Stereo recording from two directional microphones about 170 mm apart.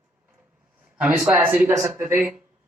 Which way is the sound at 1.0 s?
5° right (ahead or behind).